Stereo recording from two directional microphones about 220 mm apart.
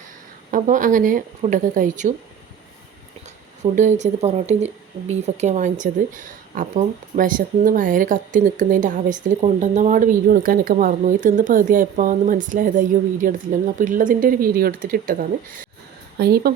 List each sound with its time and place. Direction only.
0.5 s speech: 35° right (ahead or behind)
3.6 s speech: 35° right (ahead or behind)